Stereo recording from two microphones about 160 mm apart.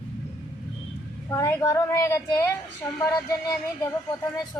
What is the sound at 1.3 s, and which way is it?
Speech, 15° left (ahead or behind).